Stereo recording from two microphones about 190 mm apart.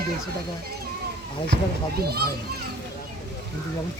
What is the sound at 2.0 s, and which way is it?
Speech, 55° right (ahead or behind).